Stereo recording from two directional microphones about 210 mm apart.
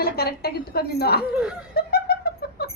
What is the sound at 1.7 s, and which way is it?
Music, 45° left (ahead or behind).